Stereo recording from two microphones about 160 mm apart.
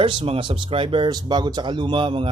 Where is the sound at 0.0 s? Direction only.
30° right (ahead or behind).